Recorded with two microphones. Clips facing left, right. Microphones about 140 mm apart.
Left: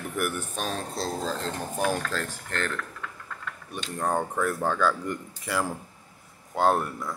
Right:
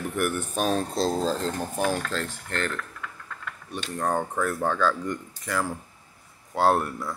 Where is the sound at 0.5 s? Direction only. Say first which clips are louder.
Right 6 dB; 20° right (ahead or behind).